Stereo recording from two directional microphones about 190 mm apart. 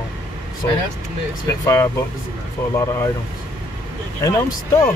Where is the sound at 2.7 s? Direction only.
15° left (ahead or behind).